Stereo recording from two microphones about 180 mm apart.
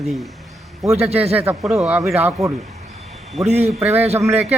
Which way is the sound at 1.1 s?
35° right (ahead or behind).